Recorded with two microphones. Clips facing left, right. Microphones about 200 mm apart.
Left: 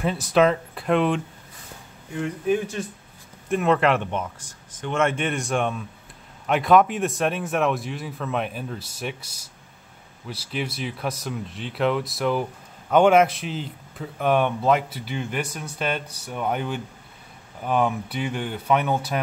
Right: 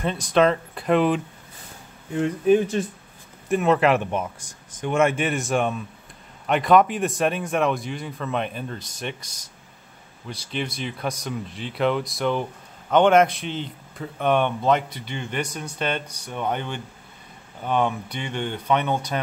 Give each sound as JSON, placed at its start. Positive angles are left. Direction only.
{"t": 0.0, "sound": "speech", "side_deg": 5}
{"t": 2.1, "sound": "speech", "side_deg": -30}
{"t": 3.4, "sound": "speech", "side_deg": -5}